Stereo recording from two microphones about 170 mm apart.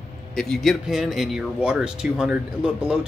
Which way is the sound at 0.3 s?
Centre (ahead or behind).